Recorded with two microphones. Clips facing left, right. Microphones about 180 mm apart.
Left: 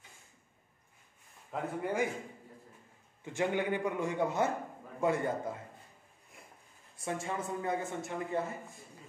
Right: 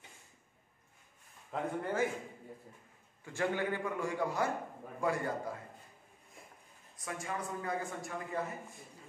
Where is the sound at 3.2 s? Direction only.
20° left (ahead or behind).